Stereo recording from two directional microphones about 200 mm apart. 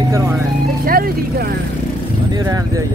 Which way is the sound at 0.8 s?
50° right (ahead or behind).